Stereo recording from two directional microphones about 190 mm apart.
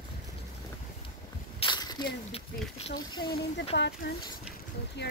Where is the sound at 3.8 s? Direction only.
55° left (ahead or behind).